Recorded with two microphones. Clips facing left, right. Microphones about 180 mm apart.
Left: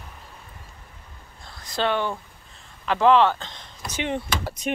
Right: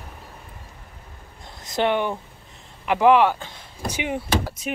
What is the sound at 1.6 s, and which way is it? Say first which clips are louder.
Speech: right 3 dB; 20° right (ahead or behind).